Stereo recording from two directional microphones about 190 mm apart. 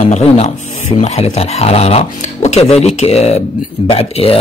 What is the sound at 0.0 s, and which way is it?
Speech, 35° left (ahead or behind).